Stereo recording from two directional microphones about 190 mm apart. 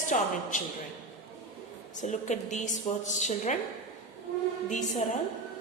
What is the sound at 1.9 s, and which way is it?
A woman's voice, 40° left (ahead or behind).